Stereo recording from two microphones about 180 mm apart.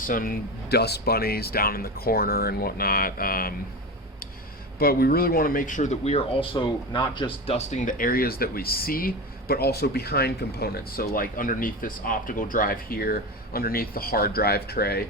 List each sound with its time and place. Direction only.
0.0 s speech: 50° left (ahead or behind)
4.8 s speech: 55° left (ahead or behind)